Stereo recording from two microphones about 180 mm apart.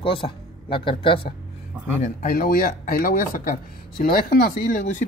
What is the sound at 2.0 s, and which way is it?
Speech, 45° left (ahead or behind).